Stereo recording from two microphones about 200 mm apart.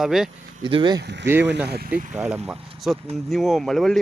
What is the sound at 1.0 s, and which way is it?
Speech, 60° right (ahead or behind).